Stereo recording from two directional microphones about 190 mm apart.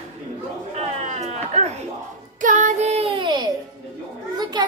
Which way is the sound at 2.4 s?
40° right (ahead or behind).